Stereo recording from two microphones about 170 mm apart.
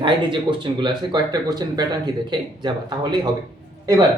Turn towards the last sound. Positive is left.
turn(degrees=-20)  # may be behind; listen again after turning